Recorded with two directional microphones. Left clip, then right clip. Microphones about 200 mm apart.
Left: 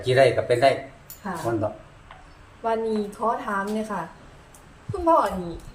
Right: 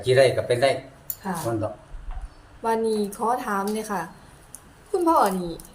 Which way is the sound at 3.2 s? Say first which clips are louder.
Right 1 dB; 60° right (ahead or behind).